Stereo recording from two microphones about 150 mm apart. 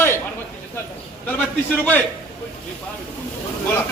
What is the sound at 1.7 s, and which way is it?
Speech, 10° left (ahead or behind).